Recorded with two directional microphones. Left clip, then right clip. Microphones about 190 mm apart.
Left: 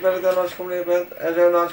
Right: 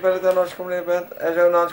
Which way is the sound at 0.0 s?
5° right (ahead or behind).